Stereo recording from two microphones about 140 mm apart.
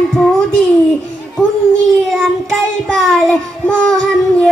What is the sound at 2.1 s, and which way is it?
Child singing, centre (ahead or behind).